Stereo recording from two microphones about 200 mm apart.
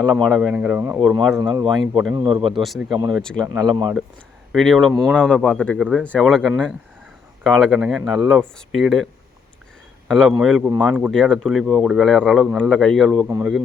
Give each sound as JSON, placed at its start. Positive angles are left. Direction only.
{"t": 0.0, "sound": "speech", "side_deg": 5}
{"t": 1.4, "sound": "speech", "side_deg": -20}
{"t": 2.5, "sound": "speech", "side_deg": 0}
{"t": 3.4, "sound": "speech", "side_deg": -15}
{"t": 4.5, "sound": "speech", "side_deg": 0}
{"t": 10.1, "sound": "a man's voice", "side_deg": 0}